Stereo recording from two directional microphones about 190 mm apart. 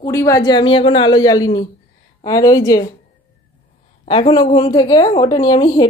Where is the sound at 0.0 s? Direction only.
15° left (ahead or behind).